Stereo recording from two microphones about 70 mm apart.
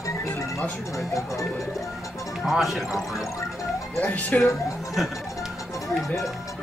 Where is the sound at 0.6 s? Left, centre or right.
Left.